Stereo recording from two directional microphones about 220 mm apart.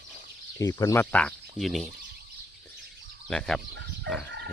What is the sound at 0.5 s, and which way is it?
Speech, 15° left (ahead or behind).